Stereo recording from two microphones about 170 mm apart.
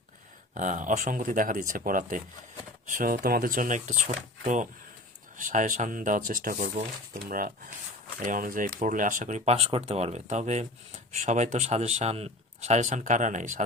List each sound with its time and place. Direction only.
0.5 s speech: 50° right (ahead or behind)